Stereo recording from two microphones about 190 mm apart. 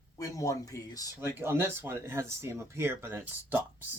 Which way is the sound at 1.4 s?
15° right (ahead or behind).